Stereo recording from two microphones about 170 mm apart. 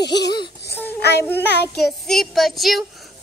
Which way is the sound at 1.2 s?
10° left (ahead or behind).